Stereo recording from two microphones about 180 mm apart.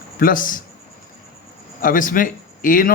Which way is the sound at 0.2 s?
50° left (ahead or behind).